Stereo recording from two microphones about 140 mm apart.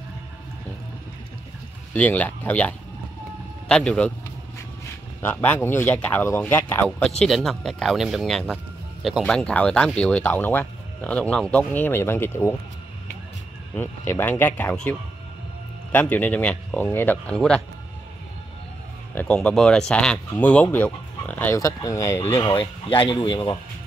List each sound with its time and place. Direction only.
2.0 s speech: 10° left (ahead or behind)
5.2 s speech: 10° left (ahead or behind)
7.0 s speech: 5° left (ahead or behind)
13.7 s speech: 15° left (ahead or behind)
19.1 s speech: 5° left (ahead or behind)
21.5 s speech: 25° left (ahead or behind)
22.4 s speech: 35° left (ahead or behind)